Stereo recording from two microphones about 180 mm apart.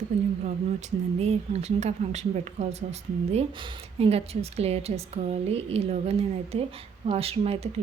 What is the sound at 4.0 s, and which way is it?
A woman's voice, 35° right (ahead or behind).